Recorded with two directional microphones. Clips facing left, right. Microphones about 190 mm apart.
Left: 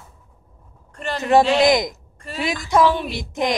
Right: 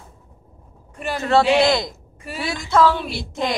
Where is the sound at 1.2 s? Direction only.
15° left (ahead or behind).